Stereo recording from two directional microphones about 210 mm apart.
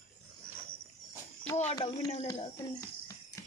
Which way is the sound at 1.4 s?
5° left (ahead or behind).